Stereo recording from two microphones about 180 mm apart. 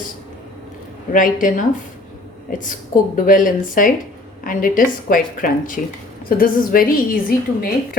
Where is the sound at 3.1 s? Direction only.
50° left (ahead or behind).